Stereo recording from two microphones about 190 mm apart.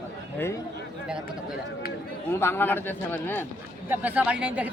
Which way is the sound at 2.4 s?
10° left (ahead or behind).